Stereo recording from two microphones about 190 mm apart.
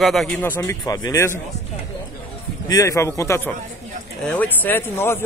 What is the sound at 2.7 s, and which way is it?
Speech, 15° left (ahead or behind).